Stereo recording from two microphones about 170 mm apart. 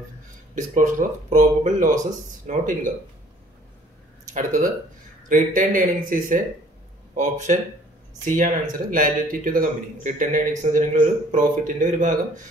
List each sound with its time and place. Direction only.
0.6 s a man's voice: 50° right (ahead or behind)
4.3 s a man's voice: 50° right (ahead or behind)